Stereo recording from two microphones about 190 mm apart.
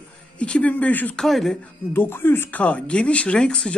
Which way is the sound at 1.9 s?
10° left (ahead or behind).